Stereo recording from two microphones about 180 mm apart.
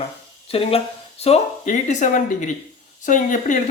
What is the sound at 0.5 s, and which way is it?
Speech, 35° left (ahead or behind).